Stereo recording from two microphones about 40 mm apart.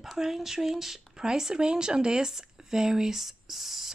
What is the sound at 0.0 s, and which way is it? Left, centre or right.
Speech, centre.